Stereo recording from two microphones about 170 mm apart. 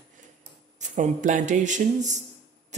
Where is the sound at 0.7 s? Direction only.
45° right (ahead or behind).